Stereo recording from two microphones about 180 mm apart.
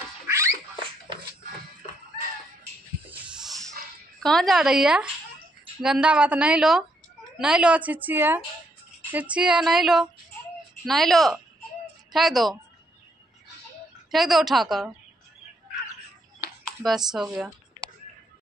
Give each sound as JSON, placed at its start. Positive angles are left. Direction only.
{"t": 0.3, "sound": "dog", "side_deg": -15}
{"t": 3.1, "sound": "snake", "side_deg": -5}
{"t": 4.2, "sound": "a woman's voice", "side_deg": 0}
{"t": 14.1, "sound": "a woman's voice", "side_deg": 0}
{"t": 16.8, "sound": "a woman's voice", "side_deg": 0}